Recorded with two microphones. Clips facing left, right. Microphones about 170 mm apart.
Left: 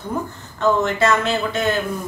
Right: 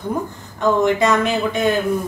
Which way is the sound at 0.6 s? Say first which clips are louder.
Right 2 dB; 15° right (ahead or behind).